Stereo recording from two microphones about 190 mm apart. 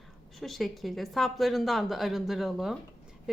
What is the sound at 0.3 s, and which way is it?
Speech, centre (ahead or behind).